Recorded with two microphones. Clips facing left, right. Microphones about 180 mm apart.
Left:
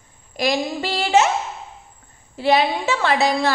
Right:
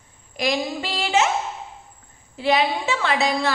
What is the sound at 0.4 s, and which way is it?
Speech, 40° left (ahead or behind).